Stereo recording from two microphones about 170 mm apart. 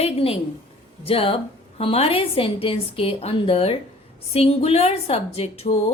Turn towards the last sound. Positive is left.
turn(degrees=35)  # may be behind; listen again after turning